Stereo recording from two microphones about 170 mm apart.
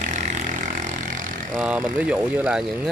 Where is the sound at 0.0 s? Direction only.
45° right (ahead or behind).